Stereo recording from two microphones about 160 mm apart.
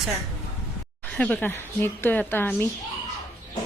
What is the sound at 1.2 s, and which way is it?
A woman's voice, 10° left (ahead or behind).